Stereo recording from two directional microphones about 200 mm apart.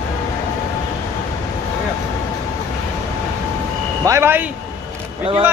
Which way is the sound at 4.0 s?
15° right (ahead or behind).